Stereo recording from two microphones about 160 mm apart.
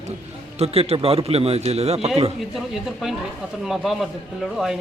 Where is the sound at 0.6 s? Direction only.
40° right (ahead or behind).